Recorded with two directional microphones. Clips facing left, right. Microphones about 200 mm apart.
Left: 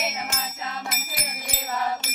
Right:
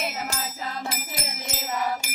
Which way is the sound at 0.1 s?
35° right (ahead or behind).